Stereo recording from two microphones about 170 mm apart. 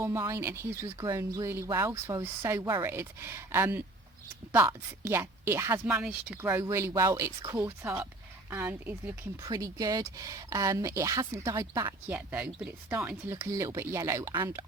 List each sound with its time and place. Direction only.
0.0 s speech: 15° right (ahead or behind)
9.5 s speech: 20° right (ahead or behind)